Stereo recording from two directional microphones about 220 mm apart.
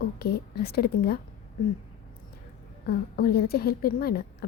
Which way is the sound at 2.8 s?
45° left (ahead or behind).